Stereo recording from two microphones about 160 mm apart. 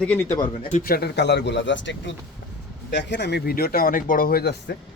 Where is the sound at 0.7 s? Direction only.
60° left (ahead or behind); by 1.6 s 90° left.